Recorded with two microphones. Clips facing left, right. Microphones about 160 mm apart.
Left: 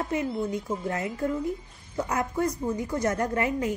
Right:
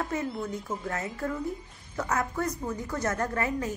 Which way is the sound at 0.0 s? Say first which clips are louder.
Left 3 dB; 20° left (ahead or behind).